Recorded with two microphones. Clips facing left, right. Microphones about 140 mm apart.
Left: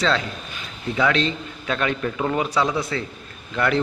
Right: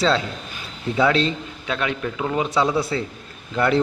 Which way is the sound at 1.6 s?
10° right (ahead or behind).